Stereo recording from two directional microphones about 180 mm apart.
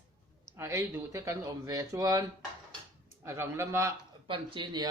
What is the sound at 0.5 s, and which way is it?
Speech, 15° right (ahead or behind).